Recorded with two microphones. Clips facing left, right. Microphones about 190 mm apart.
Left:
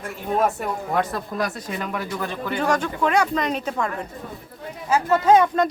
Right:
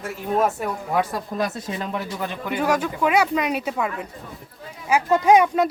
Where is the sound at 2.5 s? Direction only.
10° right (ahead or behind).